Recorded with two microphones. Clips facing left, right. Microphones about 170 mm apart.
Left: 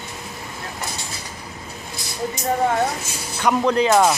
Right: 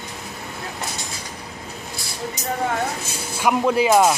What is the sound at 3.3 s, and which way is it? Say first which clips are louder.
Speech: even; 10° right (ahead or behind).